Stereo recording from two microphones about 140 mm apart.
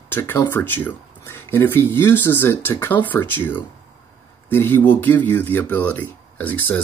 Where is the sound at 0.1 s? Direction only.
15° left (ahead or behind).